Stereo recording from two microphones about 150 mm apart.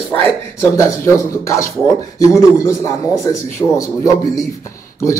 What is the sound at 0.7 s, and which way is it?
A man's voice, 20° left (ahead or behind).